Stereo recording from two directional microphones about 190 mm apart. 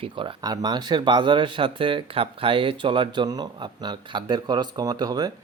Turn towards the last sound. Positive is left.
turn(degrees=-20)  # may be behind; listen again after turning